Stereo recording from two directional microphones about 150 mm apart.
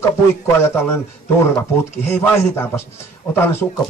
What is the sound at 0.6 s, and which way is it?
Speech, 15° left (ahead or behind).